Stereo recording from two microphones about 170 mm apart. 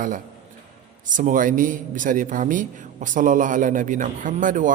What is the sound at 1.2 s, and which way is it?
A man's voice, 50° right (ahead or behind).